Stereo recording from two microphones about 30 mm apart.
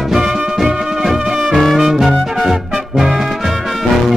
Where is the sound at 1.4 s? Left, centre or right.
Centre.